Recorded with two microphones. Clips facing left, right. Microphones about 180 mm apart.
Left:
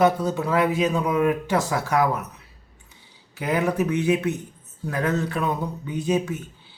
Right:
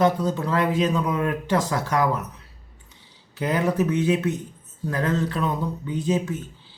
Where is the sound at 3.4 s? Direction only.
15° left (ahead or behind).